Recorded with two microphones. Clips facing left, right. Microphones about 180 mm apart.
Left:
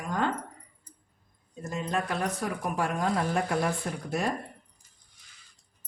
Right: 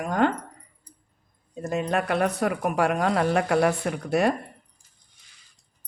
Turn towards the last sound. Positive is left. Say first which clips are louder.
# right 7 dB
turn(degrees=-70)  # may be behind; listen again after turning